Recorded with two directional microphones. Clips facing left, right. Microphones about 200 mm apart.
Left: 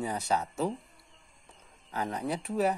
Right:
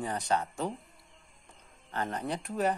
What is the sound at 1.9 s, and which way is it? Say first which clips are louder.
Speech: left 1 dB; 10° left (ahead or behind).